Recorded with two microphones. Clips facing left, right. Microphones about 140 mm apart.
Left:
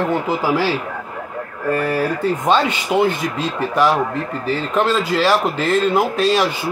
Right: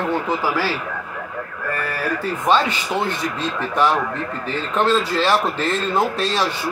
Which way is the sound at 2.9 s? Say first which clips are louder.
Left 7 dB; 15° left (ahead or behind).